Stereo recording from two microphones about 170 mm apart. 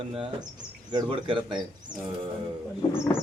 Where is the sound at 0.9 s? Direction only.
30° right (ahead or behind).